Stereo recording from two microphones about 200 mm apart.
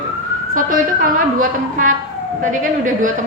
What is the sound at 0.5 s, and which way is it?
A woman's voice, 45° right (ahead or behind).